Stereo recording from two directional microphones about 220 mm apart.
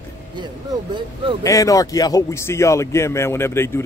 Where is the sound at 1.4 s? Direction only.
15° left (ahead or behind).